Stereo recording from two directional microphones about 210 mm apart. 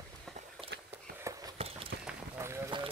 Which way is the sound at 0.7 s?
55° right (ahead or behind).